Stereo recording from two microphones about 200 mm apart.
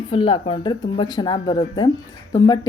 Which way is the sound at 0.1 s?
25° left (ahead or behind).